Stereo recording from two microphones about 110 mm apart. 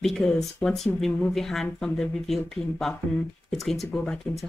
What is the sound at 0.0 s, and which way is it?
Speech, 5° left (ahead or behind).